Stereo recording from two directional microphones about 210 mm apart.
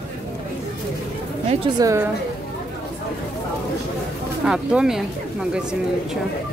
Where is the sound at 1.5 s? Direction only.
25° right (ahead or behind).